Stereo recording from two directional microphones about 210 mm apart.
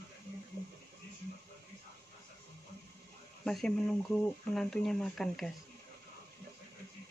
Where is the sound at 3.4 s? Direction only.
Centre (ahead or behind).